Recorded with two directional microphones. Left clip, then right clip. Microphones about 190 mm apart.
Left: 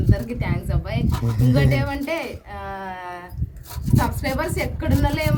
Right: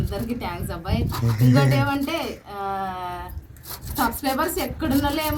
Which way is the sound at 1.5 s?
5° right (ahead or behind).